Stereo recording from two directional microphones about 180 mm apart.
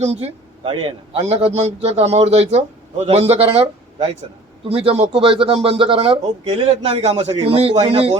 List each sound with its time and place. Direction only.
0.0 s a man's voice: 35° right (ahead or behind)